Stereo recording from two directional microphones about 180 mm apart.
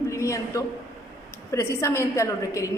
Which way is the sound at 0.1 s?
15° left (ahead or behind).